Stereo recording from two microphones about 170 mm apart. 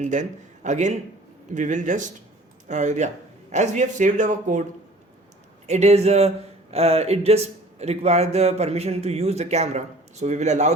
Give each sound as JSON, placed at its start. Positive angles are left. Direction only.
{"t": 0.0, "sound": "speech", "side_deg": -45}
{"t": 5.6, "sound": "a man's voice", "side_deg": -40}